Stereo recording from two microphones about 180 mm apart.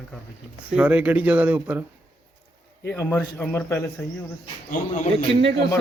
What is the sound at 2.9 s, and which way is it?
Speech, 10° left (ahead or behind).